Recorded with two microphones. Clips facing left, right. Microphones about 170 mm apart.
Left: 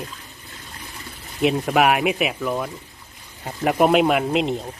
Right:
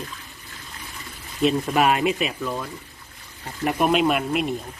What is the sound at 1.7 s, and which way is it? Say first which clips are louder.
Speech: left 2 dB; 75° left (ahead or behind).